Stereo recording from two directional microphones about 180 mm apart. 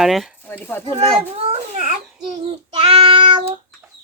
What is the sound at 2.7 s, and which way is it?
Child singing, 35° right (ahead or behind).